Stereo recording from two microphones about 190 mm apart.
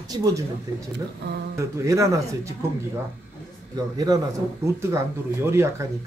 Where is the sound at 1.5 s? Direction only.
15° right (ahead or behind).